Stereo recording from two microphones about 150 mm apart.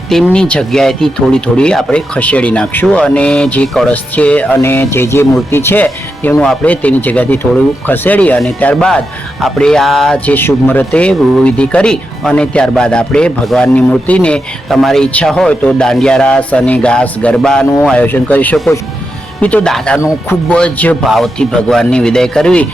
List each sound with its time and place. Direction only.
0.3 s a man's voice: 5° left (ahead or behind)
20.0 s speech: 20° left (ahead or behind)
20.5 s a man's voice: 10° left (ahead or behind)